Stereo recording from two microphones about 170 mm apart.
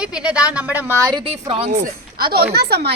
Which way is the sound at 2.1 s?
65° right (ahead or behind).